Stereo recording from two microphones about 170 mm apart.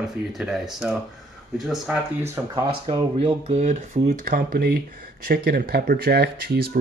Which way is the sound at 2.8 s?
30° right (ahead or behind).